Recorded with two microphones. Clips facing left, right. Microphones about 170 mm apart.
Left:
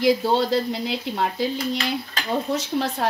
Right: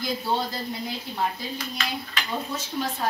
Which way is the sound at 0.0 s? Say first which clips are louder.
Left 8 dB; 75° left (ahead or behind).